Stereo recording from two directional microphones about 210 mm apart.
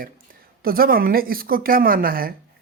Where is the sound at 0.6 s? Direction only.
45° right (ahead or behind).